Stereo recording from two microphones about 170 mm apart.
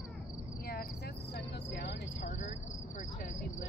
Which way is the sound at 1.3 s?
90° left.